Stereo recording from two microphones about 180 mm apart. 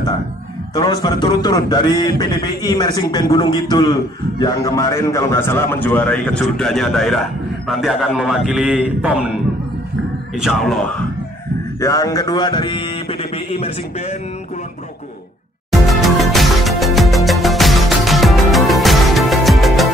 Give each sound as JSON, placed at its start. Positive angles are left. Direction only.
{"t": 0.7, "sound": "a man's voice", "side_deg": 25}
{"t": 10.3, "sound": "a man's voice", "side_deg": 0}
{"t": 11.8, "sound": "speech", "side_deg": 20}
{"t": 15.9, "sound": "music", "side_deg": 0}